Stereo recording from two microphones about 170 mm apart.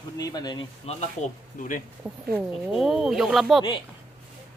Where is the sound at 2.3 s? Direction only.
5° right (ahead or behind).